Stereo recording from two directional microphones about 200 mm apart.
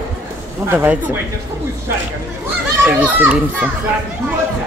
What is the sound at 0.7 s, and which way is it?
Speech, 10° right (ahead or behind).